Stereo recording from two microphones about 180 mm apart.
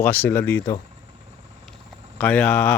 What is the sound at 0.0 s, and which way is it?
Speech, 10° left (ahead or behind).